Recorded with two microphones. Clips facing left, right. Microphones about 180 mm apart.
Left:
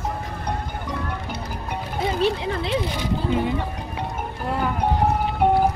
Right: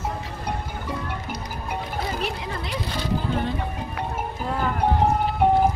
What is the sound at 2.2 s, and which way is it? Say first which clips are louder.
Speech: left 7 dB; 30° left (ahead or behind).